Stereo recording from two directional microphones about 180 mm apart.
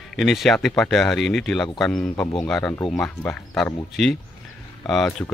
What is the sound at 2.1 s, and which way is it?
Speech, 25° left (ahead or behind).